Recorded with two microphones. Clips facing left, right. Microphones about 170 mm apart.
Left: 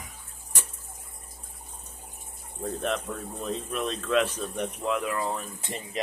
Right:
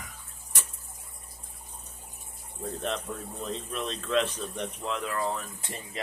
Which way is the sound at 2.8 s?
5° left (ahead or behind).